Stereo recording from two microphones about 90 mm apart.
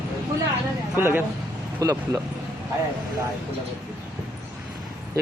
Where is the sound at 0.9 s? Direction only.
25° right (ahead or behind).